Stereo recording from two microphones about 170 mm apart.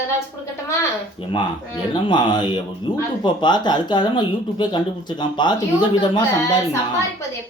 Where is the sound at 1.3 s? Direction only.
30° left (ahead or behind).